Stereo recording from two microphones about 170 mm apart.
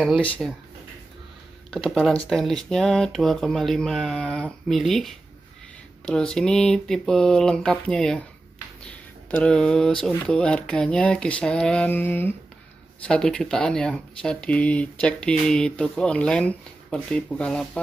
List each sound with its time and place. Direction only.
0.4 s speech: centre (ahead or behind)
1.7 s speech: centre (ahead or behind)